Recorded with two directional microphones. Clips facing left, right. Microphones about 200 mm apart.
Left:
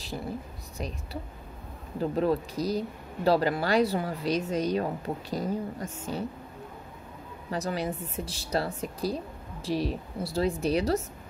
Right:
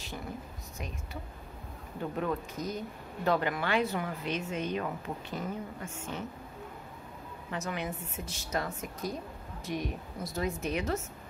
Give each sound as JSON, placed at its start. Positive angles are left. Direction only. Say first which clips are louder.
{"t": 0.7, "sound": "a woman's voice", "louder": "left 6 dB", "side_deg": 35}
{"t": 7.5, "sound": "speech", "louder": "left 5 dB", "side_deg": 35}